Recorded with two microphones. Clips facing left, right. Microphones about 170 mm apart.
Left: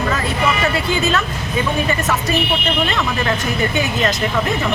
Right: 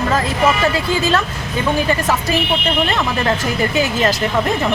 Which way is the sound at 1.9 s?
30° right (ahead or behind).